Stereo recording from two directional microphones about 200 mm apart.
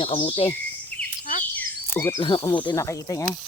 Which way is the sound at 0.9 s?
10° left (ahead or behind).